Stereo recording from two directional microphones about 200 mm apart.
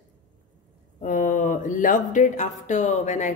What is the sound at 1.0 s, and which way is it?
Speech, 40° left (ahead or behind).